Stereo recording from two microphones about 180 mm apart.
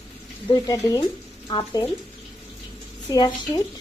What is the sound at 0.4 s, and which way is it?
Speech, 20° left (ahead or behind).